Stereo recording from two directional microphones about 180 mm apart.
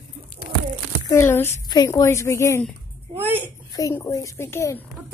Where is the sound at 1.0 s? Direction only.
15° left (ahead or behind).